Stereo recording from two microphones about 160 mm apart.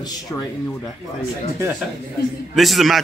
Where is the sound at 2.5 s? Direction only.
Centre (ahead or behind).